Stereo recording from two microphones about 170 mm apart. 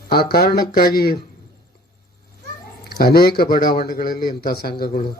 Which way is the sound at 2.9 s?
65° left (ahead or behind).